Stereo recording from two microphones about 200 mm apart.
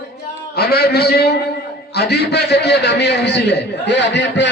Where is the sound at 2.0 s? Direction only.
55° left (ahead or behind).